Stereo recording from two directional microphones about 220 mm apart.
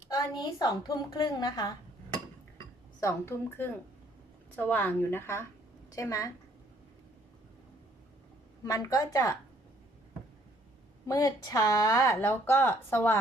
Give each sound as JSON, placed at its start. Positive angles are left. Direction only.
{"t": 0.1, "sound": "speech", "side_deg": 15}
{"t": 3.0, "sound": "speech", "side_deg": 10}
{"t": 8.6, "sound": "speech", "side_deg": 15}
{"t": 11.0, "sound": "speech", "side_deg": 15}